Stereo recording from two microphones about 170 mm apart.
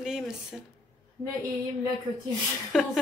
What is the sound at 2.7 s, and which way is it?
Speech, centre (ahead or behind).